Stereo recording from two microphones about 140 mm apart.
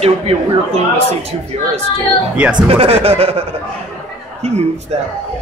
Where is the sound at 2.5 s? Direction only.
40° right (ahead or behind).